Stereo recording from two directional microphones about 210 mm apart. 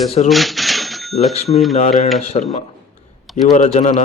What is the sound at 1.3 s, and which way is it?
Speech, 30° left (ahead or behind).